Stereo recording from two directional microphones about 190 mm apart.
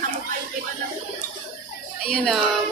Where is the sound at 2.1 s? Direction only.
5° left (ahead or behind).